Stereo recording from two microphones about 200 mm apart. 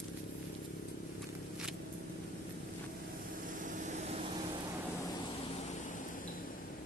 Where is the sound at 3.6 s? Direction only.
40° right (ahead or behind).